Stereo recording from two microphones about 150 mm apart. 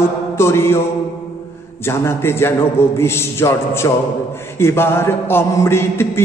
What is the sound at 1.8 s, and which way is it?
A man's voice, 15° left (ahead or behind).